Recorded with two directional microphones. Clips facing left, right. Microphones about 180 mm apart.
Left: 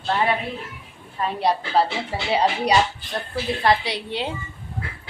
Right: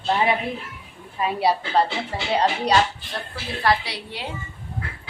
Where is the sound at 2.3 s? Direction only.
10° left (ahead or behind).